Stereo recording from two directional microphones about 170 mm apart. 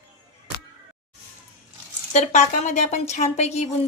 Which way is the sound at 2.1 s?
40° left (ahead or behind).